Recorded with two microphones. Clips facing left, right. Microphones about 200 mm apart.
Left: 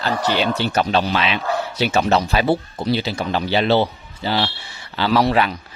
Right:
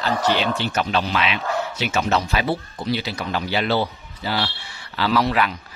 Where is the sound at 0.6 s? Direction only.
35° left (ahead or behind).